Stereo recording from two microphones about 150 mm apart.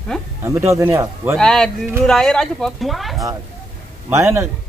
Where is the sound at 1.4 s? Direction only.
5° left (ahead or behind).